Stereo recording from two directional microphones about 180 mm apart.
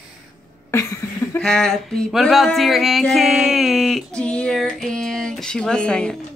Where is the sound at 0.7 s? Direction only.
15° left (ahead or behind).